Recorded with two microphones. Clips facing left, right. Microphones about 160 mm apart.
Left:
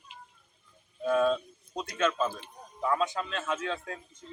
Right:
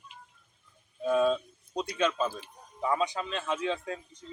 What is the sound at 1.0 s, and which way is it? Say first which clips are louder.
Speech: even; 10° right (ahead or behind).